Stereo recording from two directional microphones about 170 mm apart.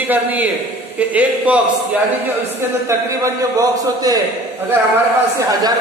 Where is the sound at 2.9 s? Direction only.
15° right (ahead or behind).